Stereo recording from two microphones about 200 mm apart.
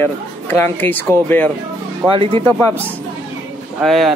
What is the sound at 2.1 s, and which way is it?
Speech, 25° right (ahead or behind).